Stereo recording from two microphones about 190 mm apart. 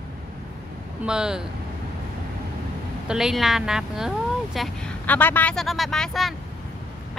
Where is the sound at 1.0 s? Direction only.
5° right (ahead or behind).